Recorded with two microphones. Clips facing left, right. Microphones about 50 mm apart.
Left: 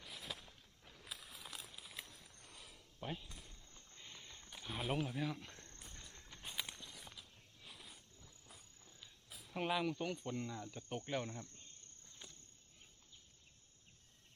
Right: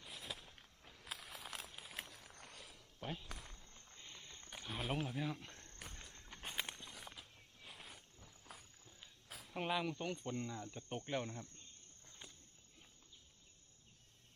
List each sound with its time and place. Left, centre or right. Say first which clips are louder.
0.1 s walk: even; centre
1.0 s a sound: right 3 dB; right
1.7 s walk: right 3 dB; right
2.6 s a sound: right 1 dB; centre
3.2 s cricket: right 5 dB; right
3.5 s cricket: right 1 dB; centre
4.6 s a sound: left 1 dB; centre
5.0 s speech: left 1 dB; centre
5.5 s walk: left 1 dB; centre
5.9 s run: right 1 dB; right
6.4 s walk: right 2 dB; right
8.5 s walk: right 6 dB; right
9.5 s cricket: left 1 dB; centre